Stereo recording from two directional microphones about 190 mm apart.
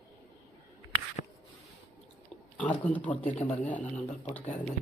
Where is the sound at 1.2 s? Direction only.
45° left (ahead or behind).